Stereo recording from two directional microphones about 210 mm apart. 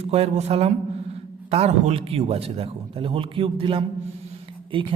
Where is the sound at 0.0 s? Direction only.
30° right (ahead or behind).